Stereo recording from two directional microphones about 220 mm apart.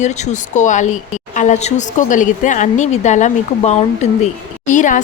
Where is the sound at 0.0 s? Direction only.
30° left (ahead or behind).